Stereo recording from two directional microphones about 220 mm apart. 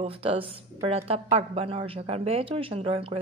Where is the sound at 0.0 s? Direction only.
25° right (ahead or behind).